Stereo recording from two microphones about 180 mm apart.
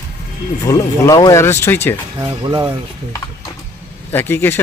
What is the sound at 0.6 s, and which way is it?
Speech, 20° left (ahead or behind).